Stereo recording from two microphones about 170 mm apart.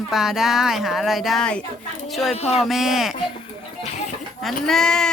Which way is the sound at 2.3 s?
40° left (ahead or behind).